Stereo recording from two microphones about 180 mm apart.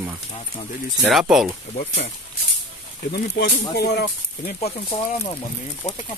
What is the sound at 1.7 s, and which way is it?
Speech, 35° left (ahead or behind).